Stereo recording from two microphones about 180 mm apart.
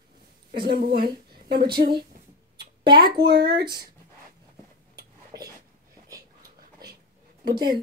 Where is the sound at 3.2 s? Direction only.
65° right (ahead or behind).